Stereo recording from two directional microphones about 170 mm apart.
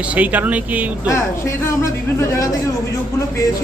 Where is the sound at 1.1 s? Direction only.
15° left (ahead or behind).